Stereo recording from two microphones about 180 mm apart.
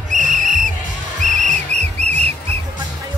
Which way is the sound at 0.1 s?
45° right (ahead or behind).